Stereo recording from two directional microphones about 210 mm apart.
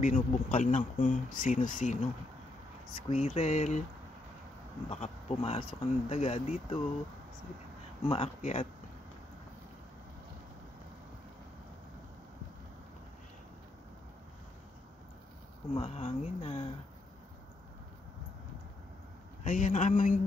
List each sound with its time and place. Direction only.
0.0 s speech: 35° left (ahead or behind)
3.1 s speech: 30° left (ahead or behind)
4.8 s speech: 30° left (ahead or behind)
8.1 s speech: 30° left (ahead or behind)
15.7 s speech: 30° left (ahead or behind)
19.4 s speech: 35° left (ahead or behind)